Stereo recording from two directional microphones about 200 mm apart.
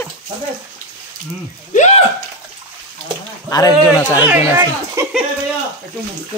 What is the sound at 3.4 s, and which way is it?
Speech, 20° left (ahead or behind).